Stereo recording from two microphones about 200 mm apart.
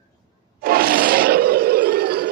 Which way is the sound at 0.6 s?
50° right (ahead or behind).